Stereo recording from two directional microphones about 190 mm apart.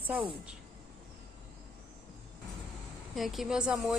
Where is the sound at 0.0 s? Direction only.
10° right (ahead or behind).